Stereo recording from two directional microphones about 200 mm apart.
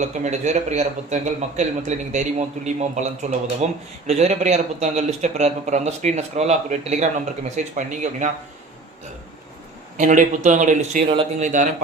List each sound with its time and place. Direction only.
0.0 s speech: 35° right (ahead or behind)
10.0 s speech: 40° right (ahead or behind)